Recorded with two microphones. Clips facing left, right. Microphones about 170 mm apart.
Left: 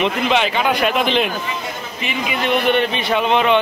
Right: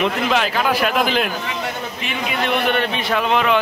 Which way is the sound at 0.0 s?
Centre (ahead or behind).